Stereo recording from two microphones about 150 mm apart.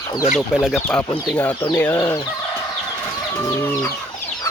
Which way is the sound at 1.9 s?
25° left (ahead or behind).